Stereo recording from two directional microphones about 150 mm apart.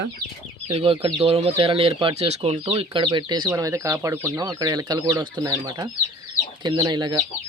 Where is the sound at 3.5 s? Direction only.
20° right (ahead or behind).